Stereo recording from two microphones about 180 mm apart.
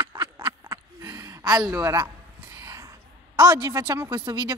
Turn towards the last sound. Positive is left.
turn(degrees=-25)  # may be behind; listen again after turning